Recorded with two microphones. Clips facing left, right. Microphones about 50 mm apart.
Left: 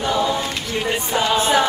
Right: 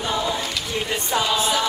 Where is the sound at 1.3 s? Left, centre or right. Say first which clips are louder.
Left 5 dB; left.